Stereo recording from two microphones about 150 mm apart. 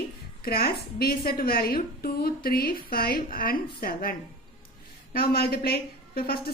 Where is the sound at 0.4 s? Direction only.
90° left.